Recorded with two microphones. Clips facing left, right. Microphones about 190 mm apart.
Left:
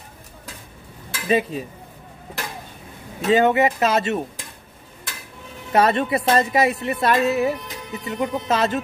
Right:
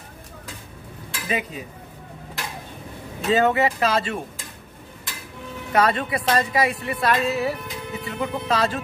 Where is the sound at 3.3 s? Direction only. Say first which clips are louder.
Left 2 dB; 20° left (ahead or behind).